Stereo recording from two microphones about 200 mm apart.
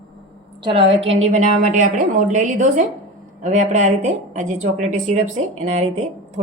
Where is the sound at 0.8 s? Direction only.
60° right (ahead or behind).